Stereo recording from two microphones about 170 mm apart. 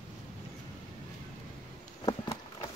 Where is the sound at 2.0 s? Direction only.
25° left (ahead or behind).